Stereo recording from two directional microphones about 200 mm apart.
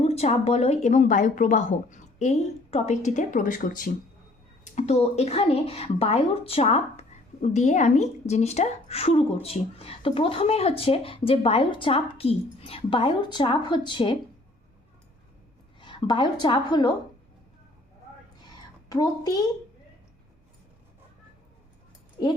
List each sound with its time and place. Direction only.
0.0 s a woman's voice: 30° left (ahead or behind)
15.8 s a woman's voice: 25° left (ahead or behind)
18.9 s a woman's voice: 20° left (ahead or behind)